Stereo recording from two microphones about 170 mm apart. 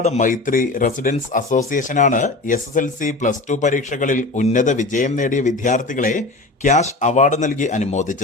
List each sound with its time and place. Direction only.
0.0 s speech: 45° left (ahead or behind)